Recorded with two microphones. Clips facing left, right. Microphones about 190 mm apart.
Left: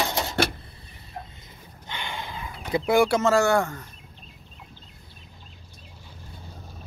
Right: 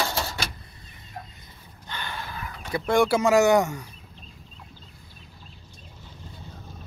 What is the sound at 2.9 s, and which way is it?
Speech, centre (ahead or behind).